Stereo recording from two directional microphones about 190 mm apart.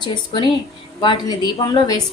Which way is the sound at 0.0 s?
25° left (ahead or behind).